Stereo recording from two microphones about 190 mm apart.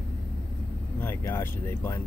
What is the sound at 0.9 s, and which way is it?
Speech, 10° left (ahead or behind).